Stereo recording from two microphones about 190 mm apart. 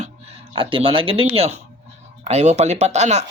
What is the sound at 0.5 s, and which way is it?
Speech, 25° right (ahead or behind).